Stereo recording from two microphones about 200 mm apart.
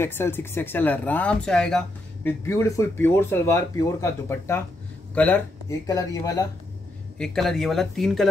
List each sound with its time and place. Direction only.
0.0 s speech: 10° left (ahead or behind)
2.4 s speech: 15° left (ahead or behind)
7.2 s speech: centre (ahead or behind)